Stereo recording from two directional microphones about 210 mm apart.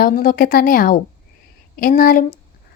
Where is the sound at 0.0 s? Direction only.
40° left (ahead or behind).